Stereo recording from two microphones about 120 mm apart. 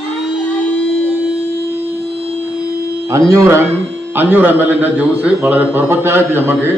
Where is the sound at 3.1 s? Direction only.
30° right (ahead or behind).